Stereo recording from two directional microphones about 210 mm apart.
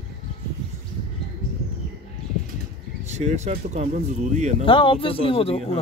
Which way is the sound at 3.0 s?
30° right (ahead or behind).